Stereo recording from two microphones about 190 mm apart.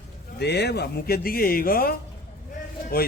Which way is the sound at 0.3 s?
60° left (ahead or behind).